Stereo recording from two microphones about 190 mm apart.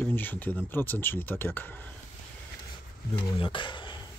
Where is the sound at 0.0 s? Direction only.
10° left (ahead or behind).